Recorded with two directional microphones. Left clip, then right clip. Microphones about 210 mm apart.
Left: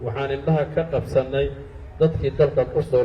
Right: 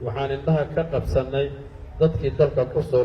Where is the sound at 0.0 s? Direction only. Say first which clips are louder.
Left 1 dB; 45° left (ahead or behind).